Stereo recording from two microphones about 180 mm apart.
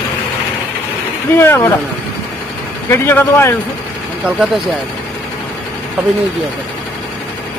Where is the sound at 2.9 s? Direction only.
15° left (ahead or behind).